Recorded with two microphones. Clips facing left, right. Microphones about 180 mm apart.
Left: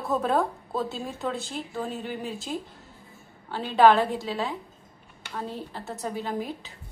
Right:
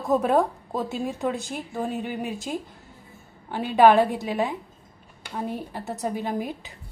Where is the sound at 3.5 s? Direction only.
15° right (ahead or behind).